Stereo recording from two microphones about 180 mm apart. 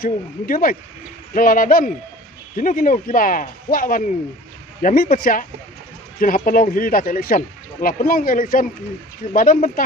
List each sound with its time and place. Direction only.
0.0 s speech: 50° left (ahead or behind)